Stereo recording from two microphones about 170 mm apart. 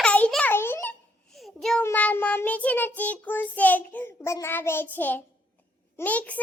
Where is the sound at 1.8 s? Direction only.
10° left (ahead or behind).